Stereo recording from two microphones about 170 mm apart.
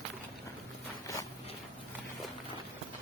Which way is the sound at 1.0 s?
20° left (ahead or behind).